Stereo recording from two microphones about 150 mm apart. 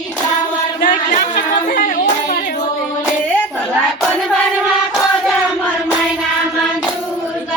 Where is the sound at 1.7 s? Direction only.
70° left (ahead or behind).